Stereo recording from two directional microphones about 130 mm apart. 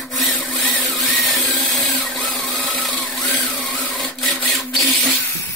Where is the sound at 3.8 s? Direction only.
5° left (ahead or behind).